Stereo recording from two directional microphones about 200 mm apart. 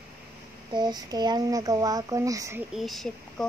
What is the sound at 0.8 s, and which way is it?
Speech, 20° right (ahead or behind).